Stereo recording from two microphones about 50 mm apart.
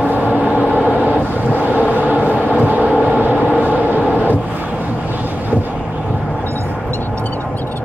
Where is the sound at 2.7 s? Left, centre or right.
Right.